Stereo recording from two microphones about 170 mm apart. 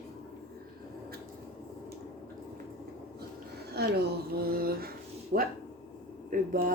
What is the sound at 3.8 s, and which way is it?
Speech, 70° right (ahead or behind).